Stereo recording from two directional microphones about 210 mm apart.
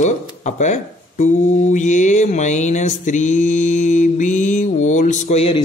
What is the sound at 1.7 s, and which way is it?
Mantra, 35° left (ahead or behind).